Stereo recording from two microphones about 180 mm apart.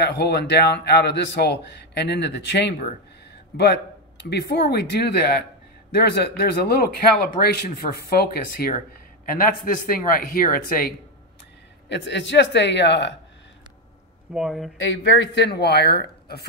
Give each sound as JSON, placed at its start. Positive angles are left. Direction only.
{"t": 0.0, "sound": "speech", "side_deg": 65}
{"t": 11.9, "sound": "speech", "side_deg": 75}
{"t": 14.3, "sound": "speech", "side_deg": 0}
{"t": 14.8, "sound": "speech", "side_deg": 90}